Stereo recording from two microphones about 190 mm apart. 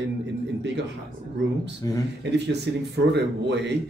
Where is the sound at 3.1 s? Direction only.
65° right (ahead or behind).